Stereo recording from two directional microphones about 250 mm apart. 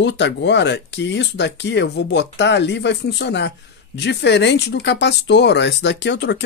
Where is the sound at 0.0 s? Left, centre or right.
Left.